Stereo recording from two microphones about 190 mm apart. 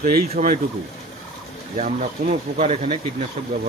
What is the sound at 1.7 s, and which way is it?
Speech, 40° right (ahead or behind).